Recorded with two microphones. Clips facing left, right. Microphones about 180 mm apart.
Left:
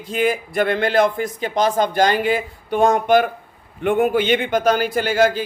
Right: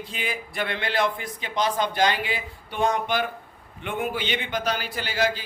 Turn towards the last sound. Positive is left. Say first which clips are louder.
# left 9 dB
turn(degrees=50)  # may be behind; listen again after turning